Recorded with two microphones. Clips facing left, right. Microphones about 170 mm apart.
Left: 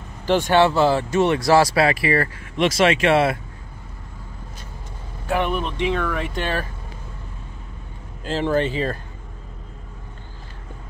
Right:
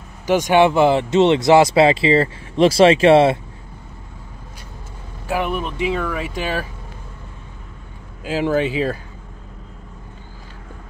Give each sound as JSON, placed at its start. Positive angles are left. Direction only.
{"t": 0.3, "sound": "speech", "side_deg": -15}
{"t": 5.2, "sound": "speech", "side_deg": -5}
{"t": 8.2, "sound": "speech", "side_deg": -10}